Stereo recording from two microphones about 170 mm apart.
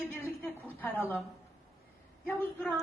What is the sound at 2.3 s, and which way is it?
Speech, 10° left (ahead or behind).